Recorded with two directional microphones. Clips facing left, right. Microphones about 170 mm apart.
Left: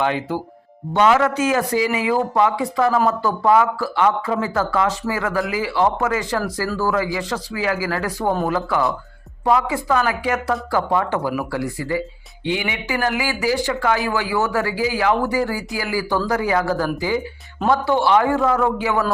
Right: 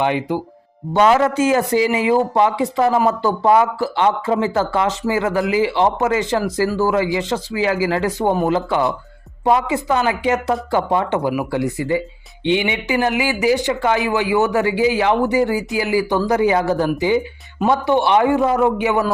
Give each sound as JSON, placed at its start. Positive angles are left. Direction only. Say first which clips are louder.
{"t": 0.0, "sound": "speech", "louder": "right 2 dB", "side_deg": -15}
{"t": 0.9, "sound": "speech", "louder": "right 2 dB", "side_deg": -35}